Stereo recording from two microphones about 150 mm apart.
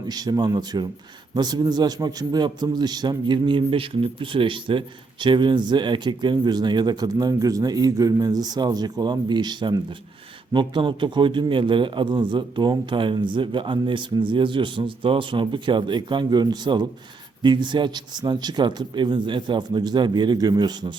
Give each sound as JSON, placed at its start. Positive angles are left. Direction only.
{"t": 0.1, "sound": "a man's voice", "side_deg": -25}